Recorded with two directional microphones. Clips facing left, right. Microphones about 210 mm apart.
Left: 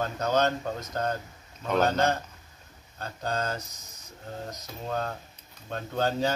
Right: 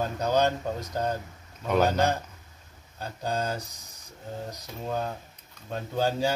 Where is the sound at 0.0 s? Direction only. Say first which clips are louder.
Right 1 dB; 10° right (ahead or behind).